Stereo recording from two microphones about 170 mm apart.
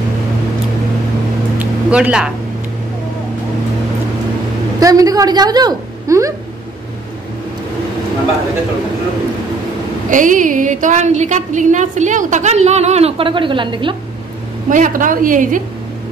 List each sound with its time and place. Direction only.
1.6 s a sound: 5° right (ahead or behind)
4.7 s a woman's voice: 20° right (ahead or behind)
10.0 s a woman's voice: 50° right (ahead or behind); by 13.9 s 30° right (ahead or behind)
14.7 s a woman's voice: 50° right (ahead or behind)